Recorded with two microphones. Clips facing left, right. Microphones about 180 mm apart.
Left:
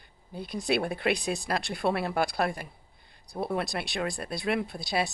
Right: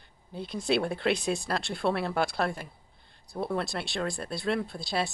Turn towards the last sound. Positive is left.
turn(degrees=15)  # may be behind; listen again after turning